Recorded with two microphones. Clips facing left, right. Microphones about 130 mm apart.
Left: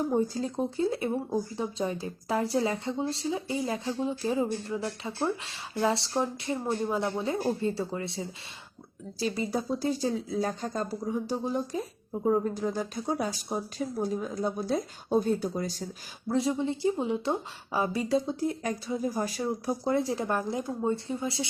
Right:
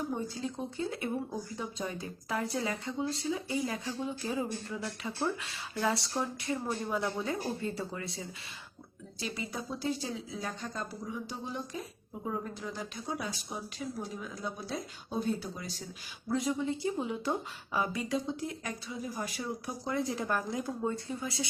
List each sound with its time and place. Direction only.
0.0 s speech: 40° left (ahead or behind)
16.3 s speech: 30° left (ahead or behind)